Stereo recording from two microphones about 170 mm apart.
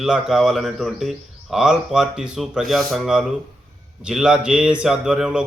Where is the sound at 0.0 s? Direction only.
Centre (ahead or behind).